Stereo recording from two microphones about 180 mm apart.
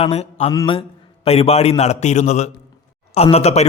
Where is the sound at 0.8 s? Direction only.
35° left (ahead or behind).